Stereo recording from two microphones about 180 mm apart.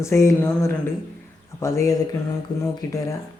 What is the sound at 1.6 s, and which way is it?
Speech, 15° left (ahead or behind).